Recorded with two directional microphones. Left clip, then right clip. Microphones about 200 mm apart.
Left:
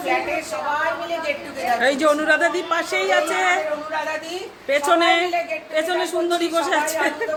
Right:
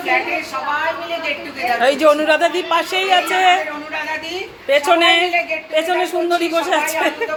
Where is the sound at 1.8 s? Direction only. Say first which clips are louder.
Right 6 dB; 5° left (ahead or behind).